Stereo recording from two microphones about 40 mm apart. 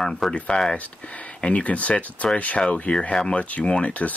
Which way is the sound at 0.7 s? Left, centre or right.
Left.